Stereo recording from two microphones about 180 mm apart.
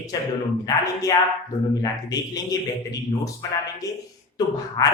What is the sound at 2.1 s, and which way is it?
Speech, 20° left (ahead or behind).